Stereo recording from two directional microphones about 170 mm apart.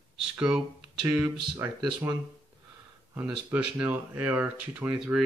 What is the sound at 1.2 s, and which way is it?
Speech, 15° right (ahead or behind).